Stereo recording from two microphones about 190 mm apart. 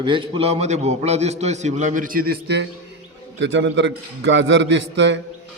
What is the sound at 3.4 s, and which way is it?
A man's voice, 70° right (ahead or behind).